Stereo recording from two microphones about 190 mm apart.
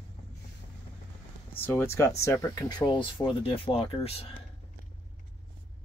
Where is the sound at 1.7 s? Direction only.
15° left (ahead or behind); by 4.3 s 30° left (ahead or behind).